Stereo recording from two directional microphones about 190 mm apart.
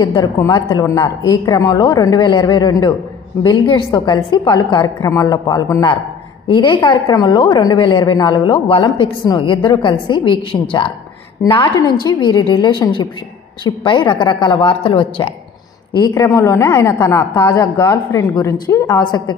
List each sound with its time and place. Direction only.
0.0 s a woman's voice: 20° left (ahead or behind)
16.0 s a woman's voice: 15° left (ahead or behind)